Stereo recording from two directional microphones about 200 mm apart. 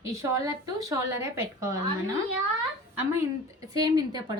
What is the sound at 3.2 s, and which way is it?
A woman's voice, 20° right (ahead or behind).